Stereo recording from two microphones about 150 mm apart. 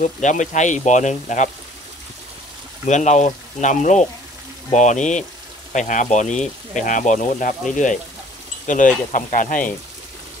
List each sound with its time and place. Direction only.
0.0 s speech: 55° left (ahead or behind)
2.9 s speech: 50° left (ahead or behind)